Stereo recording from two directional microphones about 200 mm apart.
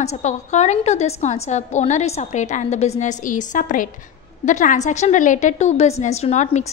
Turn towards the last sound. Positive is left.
turn(degrees=35)  # may be behind; listen again after turning